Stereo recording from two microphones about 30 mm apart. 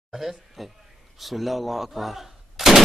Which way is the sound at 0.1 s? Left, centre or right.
Centre.